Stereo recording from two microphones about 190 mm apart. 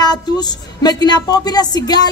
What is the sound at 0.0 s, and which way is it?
A woman's voice, 20° left (ahead or behind).